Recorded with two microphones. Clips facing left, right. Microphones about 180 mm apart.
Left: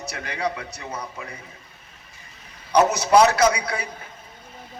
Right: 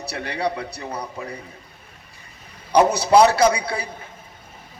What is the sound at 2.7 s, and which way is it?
A man's voice, 30° right (ahead or behind).